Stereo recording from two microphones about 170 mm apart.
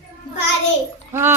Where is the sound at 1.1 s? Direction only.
15° right (ahead or behind).